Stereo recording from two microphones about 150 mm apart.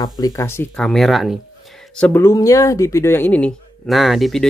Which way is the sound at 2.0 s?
15° left (ahead or behind).